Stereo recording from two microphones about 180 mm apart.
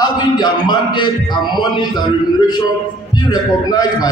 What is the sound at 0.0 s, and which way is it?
Speech, 25° left (ahead or behind).